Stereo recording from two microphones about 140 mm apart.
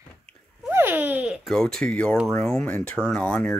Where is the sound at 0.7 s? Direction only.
15° right (ahead or behind).